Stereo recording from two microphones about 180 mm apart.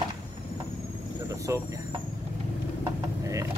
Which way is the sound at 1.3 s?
20° right (ahead or behind).